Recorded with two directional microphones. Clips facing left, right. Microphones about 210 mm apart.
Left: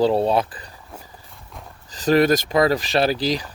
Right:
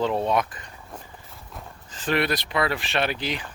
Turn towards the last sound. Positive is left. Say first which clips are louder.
# left 7 dB
turn(degrees=35)  # may be behind; listen again after turning